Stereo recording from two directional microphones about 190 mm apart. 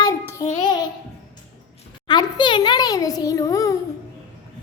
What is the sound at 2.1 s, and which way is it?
A child's voice, 25° left (ahead or behind).